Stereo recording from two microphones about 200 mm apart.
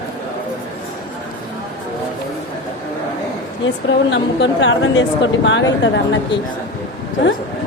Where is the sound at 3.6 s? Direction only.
65° left (ahead or behind).